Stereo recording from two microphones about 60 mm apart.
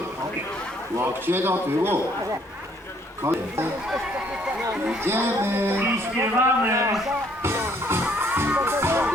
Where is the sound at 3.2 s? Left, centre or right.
Right.